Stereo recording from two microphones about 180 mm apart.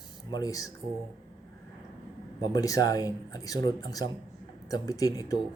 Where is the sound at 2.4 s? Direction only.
20° left (ahead or behind).